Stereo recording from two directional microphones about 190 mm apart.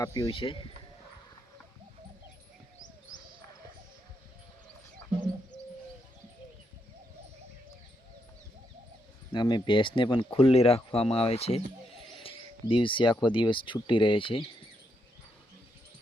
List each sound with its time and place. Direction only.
0.0 s speech: 15° left (ahead or behind)
0.3 s speech: 25° left (ahead or behind)
5.5 s bird: 70° left (ahead or behind)
9.3 s speech: 25° left (ahead or behind)